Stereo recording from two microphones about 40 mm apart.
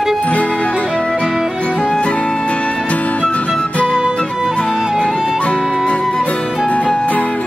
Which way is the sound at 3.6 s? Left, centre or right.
Left.